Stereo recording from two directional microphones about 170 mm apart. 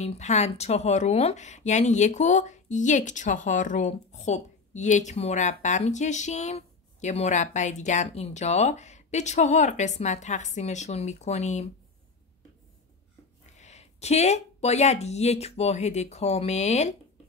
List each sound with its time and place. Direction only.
0.0 s speech: 40° left (ahead or behind)
13.6 s speech: 40° left (ahead or behind)